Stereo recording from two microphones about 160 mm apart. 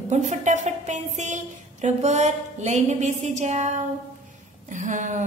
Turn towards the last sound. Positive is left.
turn(degrees=-50)  # may be behind; listen again after turning